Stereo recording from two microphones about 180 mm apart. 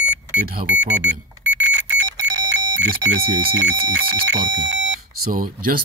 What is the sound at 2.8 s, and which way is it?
Speech, 90° right.